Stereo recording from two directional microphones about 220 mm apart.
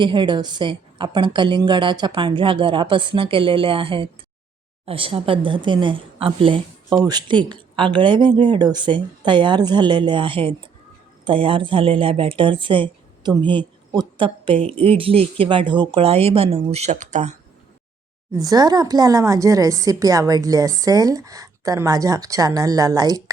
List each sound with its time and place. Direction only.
0.0 s a woman's voice: 20° right (ahead or behind)
18.3 s speech: 15° right (ahead or behind)